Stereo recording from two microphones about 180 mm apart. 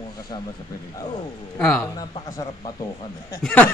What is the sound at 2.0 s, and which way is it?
Baby cry, 20° left (ahead or behind).